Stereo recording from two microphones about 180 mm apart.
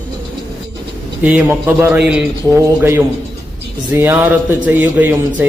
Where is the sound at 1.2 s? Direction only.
10° right (ahead or behind).